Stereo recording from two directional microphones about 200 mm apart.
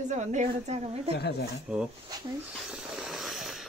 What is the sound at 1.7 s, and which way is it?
Speech, 5° right (ahead or behind).